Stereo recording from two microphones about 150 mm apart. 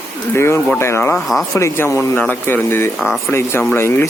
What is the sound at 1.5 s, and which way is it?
Speech, 20° left (ahead or behind).